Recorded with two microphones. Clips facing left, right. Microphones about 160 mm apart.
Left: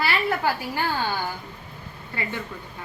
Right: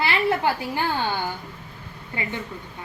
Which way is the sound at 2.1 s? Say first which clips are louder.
Right 1 dB; 15° right (ahead or behind).